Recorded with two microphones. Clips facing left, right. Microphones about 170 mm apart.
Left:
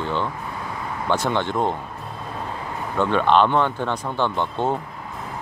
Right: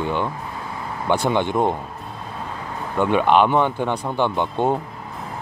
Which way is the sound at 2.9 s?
15° right (ahead or behind).